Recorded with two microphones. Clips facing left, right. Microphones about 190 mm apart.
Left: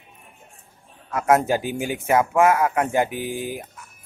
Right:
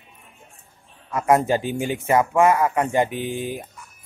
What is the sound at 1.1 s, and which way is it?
Speech, 5° left (ahead or behind).